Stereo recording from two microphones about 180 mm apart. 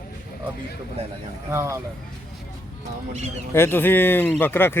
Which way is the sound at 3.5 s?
15° left (ahead or behind).